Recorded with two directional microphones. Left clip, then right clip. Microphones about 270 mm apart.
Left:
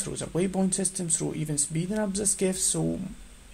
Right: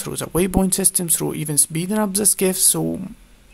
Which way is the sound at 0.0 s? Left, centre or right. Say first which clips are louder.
Right 8 dB; right.